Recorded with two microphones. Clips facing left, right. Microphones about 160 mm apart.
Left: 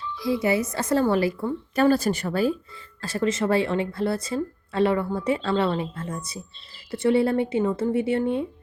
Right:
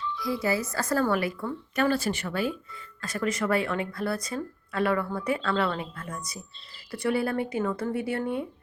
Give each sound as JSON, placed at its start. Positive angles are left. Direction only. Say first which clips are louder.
{"t": 0.2, "sound": "speech", "louder": "left 5 dB", "side_deg": 25}